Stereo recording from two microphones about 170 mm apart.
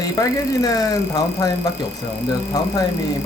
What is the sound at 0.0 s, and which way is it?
Speech, 20° left (ahead or behind).